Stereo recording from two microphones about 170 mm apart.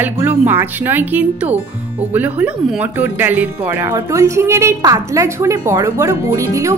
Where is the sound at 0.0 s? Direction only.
10° right (ahead or behind).